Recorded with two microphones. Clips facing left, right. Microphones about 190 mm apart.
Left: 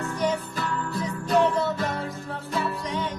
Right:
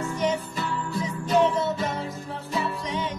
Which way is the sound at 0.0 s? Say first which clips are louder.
Even; centre (ahead or behind).